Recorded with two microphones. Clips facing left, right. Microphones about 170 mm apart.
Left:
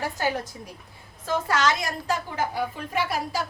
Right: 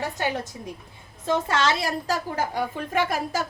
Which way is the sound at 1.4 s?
25° right (ahead or behind).